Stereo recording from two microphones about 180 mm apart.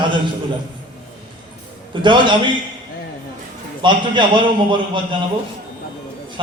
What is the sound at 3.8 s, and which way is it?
A man's voice, 25° right (ahead or behind).